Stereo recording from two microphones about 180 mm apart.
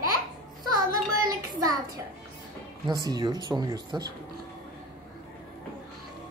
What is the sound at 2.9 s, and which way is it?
Speech, 20° right (ahead or behind).